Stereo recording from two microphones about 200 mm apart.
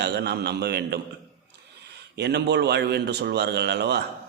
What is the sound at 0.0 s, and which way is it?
Speech, 55° right (ahead or behind).